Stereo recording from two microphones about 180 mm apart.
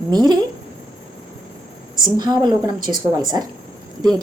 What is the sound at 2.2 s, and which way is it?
Speech, 25° right (ahead or behind).